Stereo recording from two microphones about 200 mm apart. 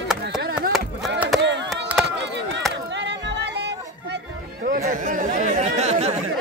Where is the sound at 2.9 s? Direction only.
60° right (ahead or behind).